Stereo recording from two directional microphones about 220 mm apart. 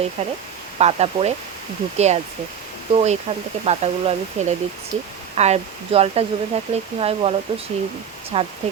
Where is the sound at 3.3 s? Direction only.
30° right (ahead or behind).